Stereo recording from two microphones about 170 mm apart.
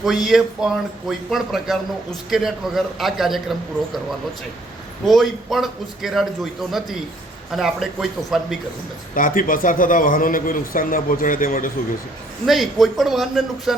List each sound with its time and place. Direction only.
0.0 s a man's voice: centre (ahead or behind)
5.0 s a man's voice: centre (ahead or behind)
9.1 s a man's voice: 55° left (ahead or behind)
12.5 s a man's voice: centre (ahead or behind)